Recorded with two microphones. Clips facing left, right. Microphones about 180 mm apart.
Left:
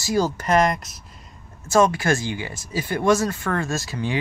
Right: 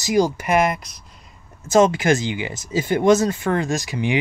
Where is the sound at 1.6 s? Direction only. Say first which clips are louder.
Right 3 dB; 20° right (ahead or behind).